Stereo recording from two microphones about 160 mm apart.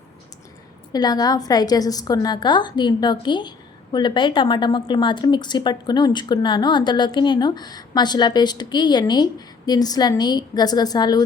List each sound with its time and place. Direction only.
0.9 s a woman's voice: 25° left (ahead or behind)